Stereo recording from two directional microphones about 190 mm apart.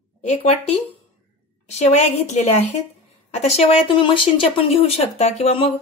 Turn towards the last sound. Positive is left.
turn(degrees=30)  # may be behind; listen again after turning